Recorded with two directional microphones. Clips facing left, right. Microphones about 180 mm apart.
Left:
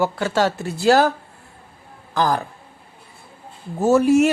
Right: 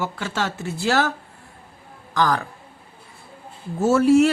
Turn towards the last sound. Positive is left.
turn(degrees=15)  # may be behind; listen again after turning